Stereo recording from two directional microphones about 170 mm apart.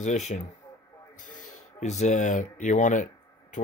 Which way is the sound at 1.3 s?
45° left (ahead or behind).